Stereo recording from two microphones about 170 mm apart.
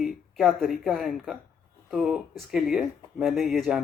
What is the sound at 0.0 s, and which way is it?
Speech, centre (ahead or behind).